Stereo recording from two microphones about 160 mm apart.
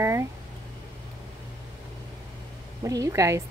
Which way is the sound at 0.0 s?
15° right (ahead or behind).